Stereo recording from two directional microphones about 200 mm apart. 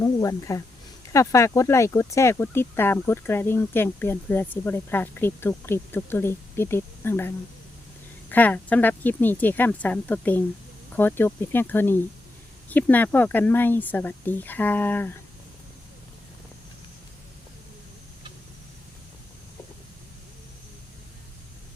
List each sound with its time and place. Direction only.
0.0 s speech: 15° left (ahead or behind)